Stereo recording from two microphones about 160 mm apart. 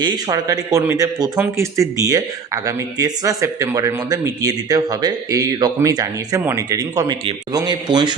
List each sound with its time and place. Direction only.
0.0 s a man's voice: 25° right (ahead or behind)